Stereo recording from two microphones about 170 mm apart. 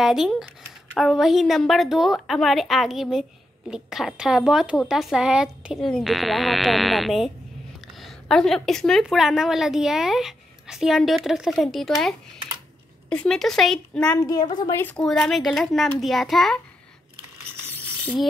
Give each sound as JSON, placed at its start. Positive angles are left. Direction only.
{"t": 0.0, "sound": "a woman's voice", "side_deg": 0}
{"t": 14.2, "sound": "a woman's voice", "side_deg": 25}
{"t": 14.8, "sound": "a woman's voice", "side_deg": 10}
{"t": 17.6, "sound": "a sound", "side_deg": -10}